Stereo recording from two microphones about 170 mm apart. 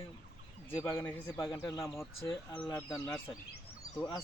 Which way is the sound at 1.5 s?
20° left (ahead or behind).